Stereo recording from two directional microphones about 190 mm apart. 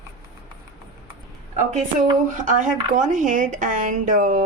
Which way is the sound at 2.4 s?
45° right (ahead or behind).